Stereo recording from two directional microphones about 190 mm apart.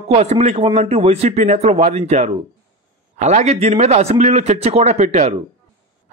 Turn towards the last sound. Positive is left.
turn(degrees=-35)  # may be behind; listen again after turning